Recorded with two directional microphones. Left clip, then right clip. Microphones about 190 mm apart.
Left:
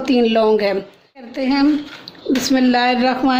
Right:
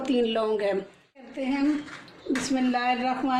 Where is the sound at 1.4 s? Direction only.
50° left (ahead or behind).